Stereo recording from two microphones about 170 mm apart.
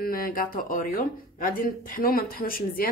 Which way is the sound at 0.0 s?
60° left (ahead or behind).